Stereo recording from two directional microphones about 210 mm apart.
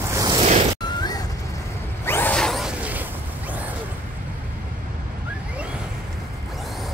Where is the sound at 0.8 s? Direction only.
20° left (ahead or behind).